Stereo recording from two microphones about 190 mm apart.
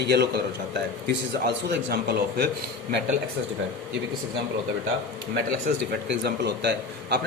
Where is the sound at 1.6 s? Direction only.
55° right (ahead or behind).